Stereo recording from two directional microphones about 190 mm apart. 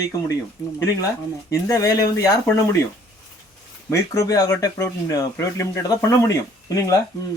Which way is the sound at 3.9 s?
15° left (ahead or behind).